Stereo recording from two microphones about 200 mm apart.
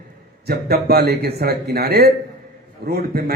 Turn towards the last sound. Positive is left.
turn(degrees=-50)  # may be behind; listen again after turning